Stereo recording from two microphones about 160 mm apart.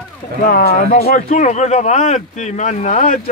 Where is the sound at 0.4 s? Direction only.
65° left (ahead or behind).